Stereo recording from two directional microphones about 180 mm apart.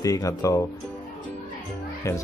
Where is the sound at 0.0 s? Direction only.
20° left (ahead or behind).